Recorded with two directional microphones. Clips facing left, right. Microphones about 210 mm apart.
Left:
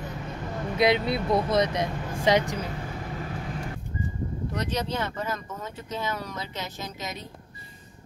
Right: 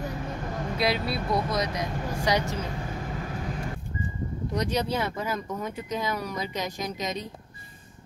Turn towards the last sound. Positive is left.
turn(degrees=-15)  # may be behind; listen again after turning